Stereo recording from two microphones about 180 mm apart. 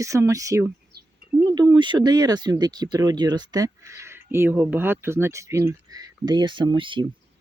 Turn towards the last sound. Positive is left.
turn(degrees=-30)  # may be behind; listen again after turning